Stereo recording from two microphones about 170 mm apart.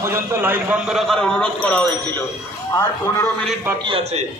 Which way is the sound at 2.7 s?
20° left (ahead or behind).